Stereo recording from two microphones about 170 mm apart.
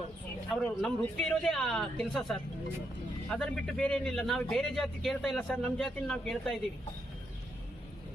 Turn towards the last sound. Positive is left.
turn(degrees=0)  # may be behind; listen again after turning